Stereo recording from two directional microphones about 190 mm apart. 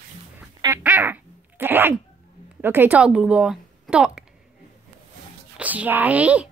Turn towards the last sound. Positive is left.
turn(degrees=-5)  # may be behind; listen again after turning